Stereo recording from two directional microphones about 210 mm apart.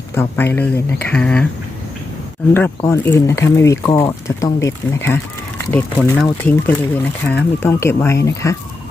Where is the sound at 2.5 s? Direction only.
10° left (ahead or behind).